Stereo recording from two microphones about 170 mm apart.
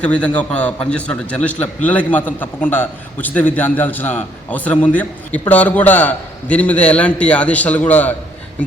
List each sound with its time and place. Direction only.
0.0 s a man's voice: 5° left (ahead or behind)